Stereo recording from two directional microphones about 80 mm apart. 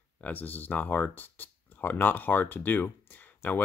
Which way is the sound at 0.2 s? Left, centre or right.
Left.